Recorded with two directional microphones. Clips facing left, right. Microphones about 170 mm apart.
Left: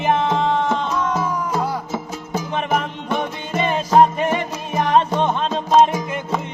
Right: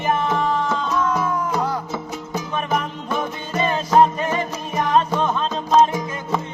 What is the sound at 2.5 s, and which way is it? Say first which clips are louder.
Music: left 2 dB; 25° left (ahead or behind).